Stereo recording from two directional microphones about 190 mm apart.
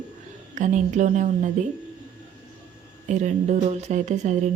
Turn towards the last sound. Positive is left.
turn(degrees=-40)  # may be behind; listen again after turning